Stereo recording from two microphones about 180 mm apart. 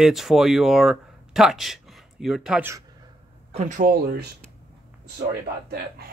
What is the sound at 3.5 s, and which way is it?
Speech, 45° right (ahead or behind).